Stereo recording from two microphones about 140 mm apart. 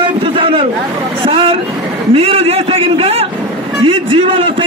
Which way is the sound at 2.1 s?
45° right (ahead or behind).